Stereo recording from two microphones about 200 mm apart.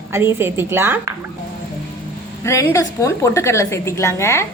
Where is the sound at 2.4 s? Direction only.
15° left (ahead or behind).